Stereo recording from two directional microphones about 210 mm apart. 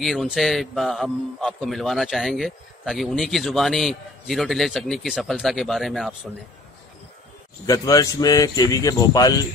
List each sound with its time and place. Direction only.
0.0 s a man's voice: centre (ahead or behind)
7.6 s speech: 15° left (ahead or behind)